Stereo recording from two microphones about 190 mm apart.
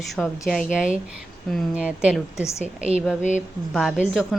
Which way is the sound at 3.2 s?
40° left (ahead or behind).